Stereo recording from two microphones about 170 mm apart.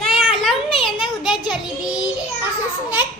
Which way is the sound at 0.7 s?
30° left (ahead or behind).